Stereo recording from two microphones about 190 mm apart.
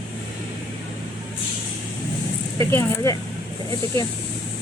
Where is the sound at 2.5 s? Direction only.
15° left (ahead or behind).